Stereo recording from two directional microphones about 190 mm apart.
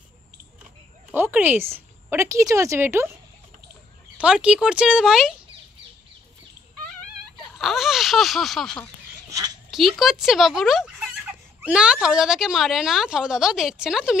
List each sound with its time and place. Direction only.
1.1 s speech: 10° right (ahead or behind)
4.2 s speech: 5° right (ahead or behind)
7.5 s speech: centre (ahead or behind)
9.3 s a sound: 20° right (ahead or behind)
9.7 s speech: centre (ahead or behind)